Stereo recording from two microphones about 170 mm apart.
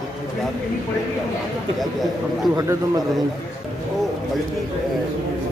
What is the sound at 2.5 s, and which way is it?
Speech, 20° right (ahead or behind).